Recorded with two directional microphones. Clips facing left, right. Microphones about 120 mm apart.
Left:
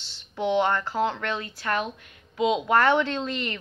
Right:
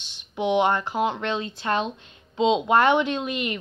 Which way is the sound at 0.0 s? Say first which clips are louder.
Right 2 dB; 15° right (ahead or behind).